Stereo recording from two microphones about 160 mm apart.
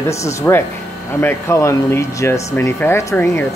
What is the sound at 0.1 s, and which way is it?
Speech, 20° left (ahead or behind).